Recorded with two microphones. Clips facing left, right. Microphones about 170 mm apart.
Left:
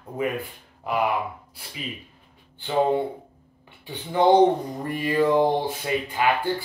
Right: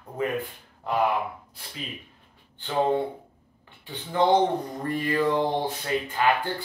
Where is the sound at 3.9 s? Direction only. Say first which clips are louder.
Left 3 dB; 15° left (ahead or behind).